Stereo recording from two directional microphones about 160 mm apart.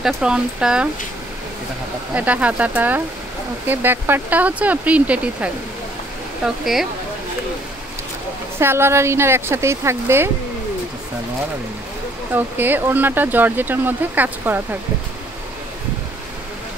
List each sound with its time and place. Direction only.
0.0 s speech: 5° right (ahead or behind)
2.1 s speech: 10° right (ahead or behind)
8.5 s speech: 15° right (ahead or behind)
12.3 s speech: 10° right (ahead or behind)